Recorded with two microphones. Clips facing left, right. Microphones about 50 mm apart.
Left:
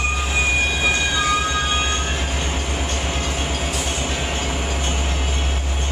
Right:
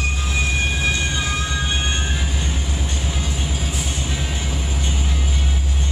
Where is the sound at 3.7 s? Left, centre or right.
Left.